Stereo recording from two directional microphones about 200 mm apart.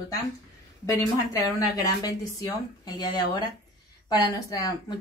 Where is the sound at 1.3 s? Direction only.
15° left (ahead or behind).